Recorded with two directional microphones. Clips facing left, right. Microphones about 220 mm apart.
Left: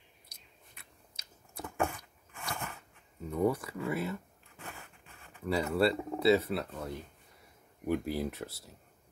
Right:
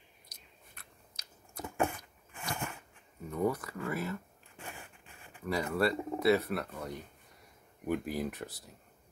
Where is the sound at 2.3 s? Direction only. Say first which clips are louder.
Right 1 dB; 15° right (ahead or behind).